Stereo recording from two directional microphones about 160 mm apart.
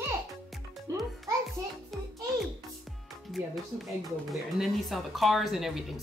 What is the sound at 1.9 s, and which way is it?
Music, centre (ahead or behind).